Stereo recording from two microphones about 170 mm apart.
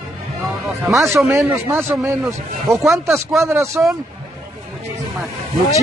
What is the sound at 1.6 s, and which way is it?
Speech, 15° right (ahead or behind).